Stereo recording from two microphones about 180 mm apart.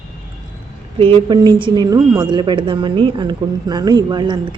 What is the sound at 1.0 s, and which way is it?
A woman's voice, 30° right (ahead or behind).